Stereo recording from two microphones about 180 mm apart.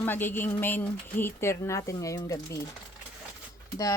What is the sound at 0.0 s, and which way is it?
Speech, 10° left (ahead or behind).